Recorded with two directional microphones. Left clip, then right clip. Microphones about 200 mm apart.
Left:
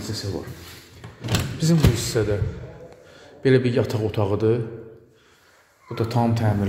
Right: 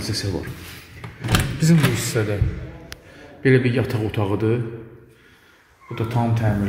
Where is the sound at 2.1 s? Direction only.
10° left (ahead or behind).